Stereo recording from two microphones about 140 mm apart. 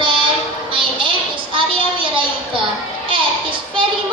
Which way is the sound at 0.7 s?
35° right (ahead or behind).